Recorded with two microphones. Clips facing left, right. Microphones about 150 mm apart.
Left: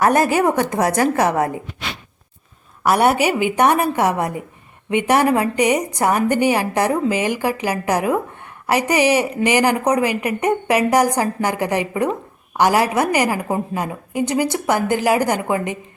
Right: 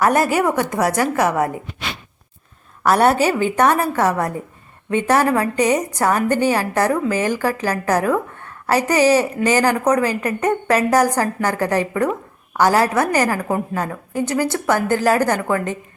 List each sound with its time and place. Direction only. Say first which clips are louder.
0.0 s a woman's voice: left 1 dB; 20° left (ahead or behind)
2.8 s a woman's voice: right 1 dB; 10° left (ahead or behind)